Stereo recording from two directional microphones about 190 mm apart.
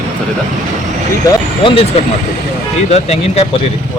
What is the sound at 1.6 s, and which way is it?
Speech, 30° left (ahead or behind).